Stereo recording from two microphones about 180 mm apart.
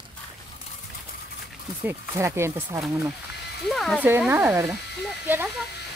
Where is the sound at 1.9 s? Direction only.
15° right (ahead or behind).